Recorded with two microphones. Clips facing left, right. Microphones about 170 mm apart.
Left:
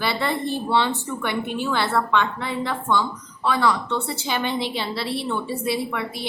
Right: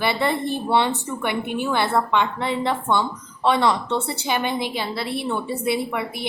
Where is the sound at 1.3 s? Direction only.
55° right (ahead or behind).